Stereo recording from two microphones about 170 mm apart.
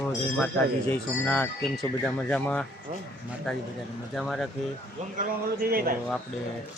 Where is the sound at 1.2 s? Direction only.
10° left (ahead or behind).